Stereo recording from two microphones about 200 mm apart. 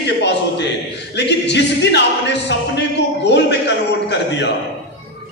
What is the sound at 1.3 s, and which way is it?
A man's voice, 60° left (ahead or behind).